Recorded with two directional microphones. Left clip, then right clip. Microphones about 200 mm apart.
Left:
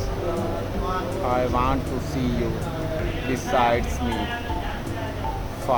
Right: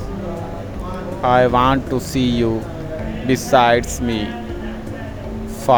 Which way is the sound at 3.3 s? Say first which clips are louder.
Right 8 dB; 40° right (ahead or behind).